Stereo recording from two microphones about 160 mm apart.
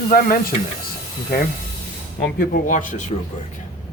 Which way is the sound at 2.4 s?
60° left (ahead or behind).